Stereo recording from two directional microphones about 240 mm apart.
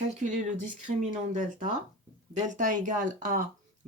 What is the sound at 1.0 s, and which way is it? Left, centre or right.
Speech, right.